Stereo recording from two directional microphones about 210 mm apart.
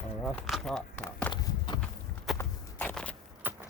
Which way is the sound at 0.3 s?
Centre (ahead or behind).